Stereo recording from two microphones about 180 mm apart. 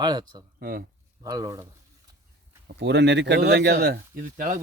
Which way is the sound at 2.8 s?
70° right (ahead or behind).